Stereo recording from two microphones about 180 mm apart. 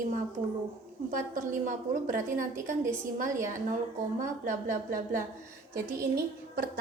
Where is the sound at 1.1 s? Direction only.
45° right (ahead or behind).